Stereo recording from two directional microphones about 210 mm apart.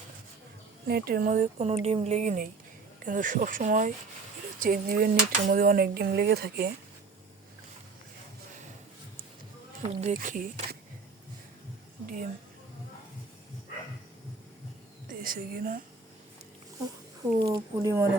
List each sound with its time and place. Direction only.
0.9 s speech: 45° right (ahead or behind)
9.8 s speech: 35° right (ahead or behind)
12.0 s speech: 40° right (ahead or behind)
15.0 s a woman's voice: 40° right (ahead or behind)
17.4 s speech: 15° right (ahead or behind)